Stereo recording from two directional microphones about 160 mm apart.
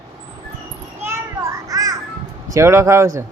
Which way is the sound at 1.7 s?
20° right (ahead or behind).